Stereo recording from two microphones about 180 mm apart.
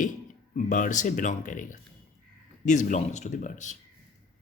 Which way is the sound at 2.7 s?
40° left (ahead or behind).